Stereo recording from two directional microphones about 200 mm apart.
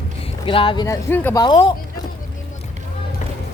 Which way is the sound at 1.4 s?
25° left (ahead or behind).